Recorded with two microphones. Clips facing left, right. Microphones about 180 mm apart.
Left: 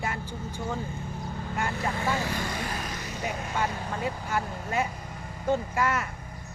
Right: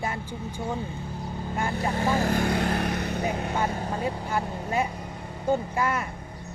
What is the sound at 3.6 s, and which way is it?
Speech, 35° right (ahead or behind).